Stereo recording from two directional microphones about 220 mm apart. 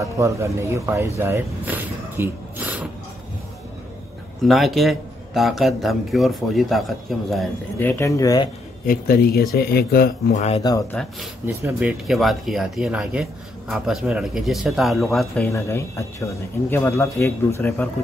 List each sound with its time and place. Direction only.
0.0 s speech: 15° right (ahead or behind)
4.5 s speech: centre (ahead or behind)
7.7 s speech: 10° left (ahead or behind)
8.8 s speech: 45° left (ahead or behind)
10.3 s speech: 30° left (ahead or behind)
10.6 s speech: 15° left (ahead or behind)
11.4 s speech: 10° right (ahead or behind)
15.4 s speech: 10° left (ahead or behind)